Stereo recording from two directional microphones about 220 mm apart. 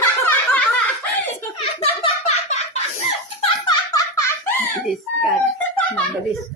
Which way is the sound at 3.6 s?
15° left (ahead or behind).